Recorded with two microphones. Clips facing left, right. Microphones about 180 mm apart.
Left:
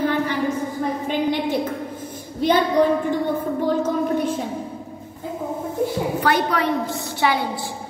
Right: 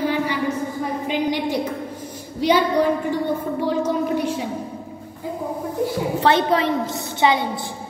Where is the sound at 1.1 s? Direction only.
10° right (ahead or behind).